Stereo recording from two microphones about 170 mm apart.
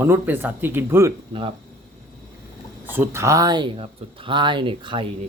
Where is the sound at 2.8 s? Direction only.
10° right (ahead or behind); by 5.0 s 30° right (ahead or behind).